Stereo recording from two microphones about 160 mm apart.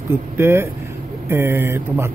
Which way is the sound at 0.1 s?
15° right (ahead or behind).